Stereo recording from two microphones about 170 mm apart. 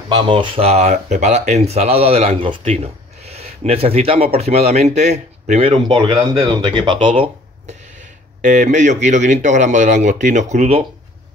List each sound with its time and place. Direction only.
0.1 s speech: 30° right (ahead or behind)
5.9 s speech: 25° right (ahead or behind)
8.4 s speech: 45° right (ahead or behind)